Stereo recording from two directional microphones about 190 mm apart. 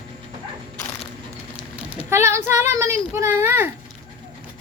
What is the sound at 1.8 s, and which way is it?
Speech, 10° right (ahead or behind).